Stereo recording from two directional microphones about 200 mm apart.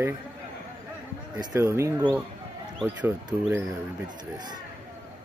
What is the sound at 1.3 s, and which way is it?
Speech, 20° right (ahead or behind).